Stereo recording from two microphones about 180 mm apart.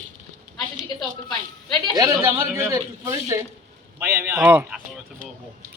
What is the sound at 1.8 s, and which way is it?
A woman's voice, 25° right (ahead or behind).